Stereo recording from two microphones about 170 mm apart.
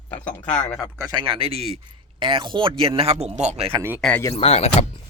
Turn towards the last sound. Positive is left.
turn(degrees=35)  # may be behind; listen again after turning